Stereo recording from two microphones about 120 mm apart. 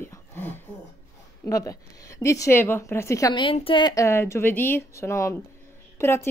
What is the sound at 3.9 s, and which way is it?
Speech, 25° left (ahead or behind).